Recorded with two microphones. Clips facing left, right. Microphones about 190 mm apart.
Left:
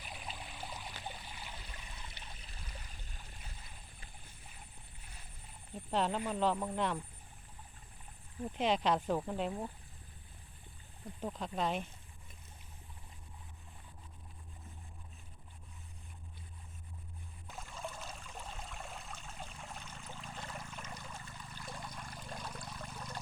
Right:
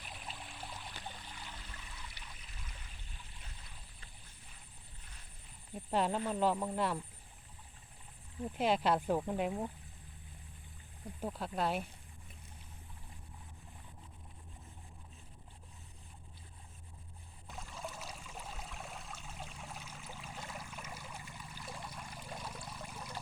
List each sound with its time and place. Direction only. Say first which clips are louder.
0.0 s a sound: left 2 dB; centre (ahead or behind); by 3.3 s 45° left (ahead or behind)
5.9 s speech: right 1 dB; 10° right (ahead or behind)
8.5 s speech: even; 5° right (ahead or behind)
11.0 s speech: even; 10° right (ahead or behind)
17.5 s trickle: even; centre (ahead or behind)